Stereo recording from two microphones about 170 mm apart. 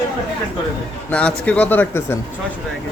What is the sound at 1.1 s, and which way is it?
Speech, 5° left (ahead or behind).